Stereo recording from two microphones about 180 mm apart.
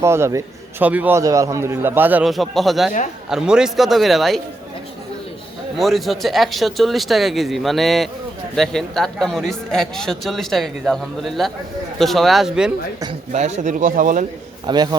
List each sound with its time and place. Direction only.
0.0 s a man's voice: 15° right (ahead or behind)
5.7 s a man's voice: centre (ahead or behind)
13.3 s speech: 45° right (ahead or behind)
14.7 s a man's voice: 25° right (ahead or behind)